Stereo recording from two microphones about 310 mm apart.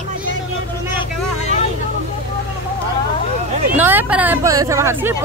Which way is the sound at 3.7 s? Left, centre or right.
Centre.